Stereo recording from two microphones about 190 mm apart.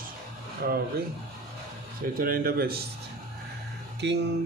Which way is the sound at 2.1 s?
50° right (ahead or behind).